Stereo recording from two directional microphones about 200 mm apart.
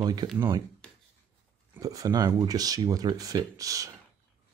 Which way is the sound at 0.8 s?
5° left (ahead or behind).